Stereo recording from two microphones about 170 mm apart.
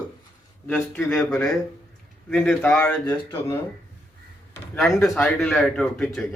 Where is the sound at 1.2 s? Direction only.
15° left (ahead or behind).